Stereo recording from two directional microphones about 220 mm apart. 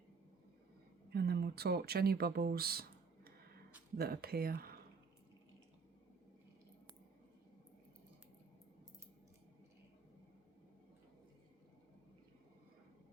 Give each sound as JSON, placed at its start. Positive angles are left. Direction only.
{"t": 1.1, "sound": "speech", "side_deg": -45}
{"t": 3.9, "sound": "speech", "side_deg": -45}